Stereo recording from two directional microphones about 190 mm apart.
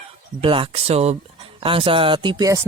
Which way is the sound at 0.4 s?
30° right (ahead or behind).